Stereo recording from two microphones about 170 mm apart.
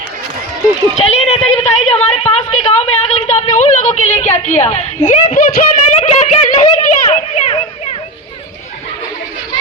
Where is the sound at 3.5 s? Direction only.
50° left (ahead or behind).